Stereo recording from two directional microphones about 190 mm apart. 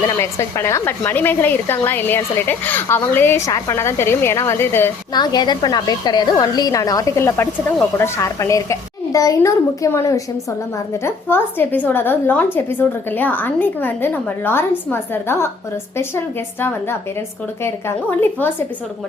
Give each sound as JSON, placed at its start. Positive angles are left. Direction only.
{"t": 0.2, "sound": "a woman's voice", "side_deg": 15}
{"t": 5.1, "sound": "a woman's voice", "side_deg": 20}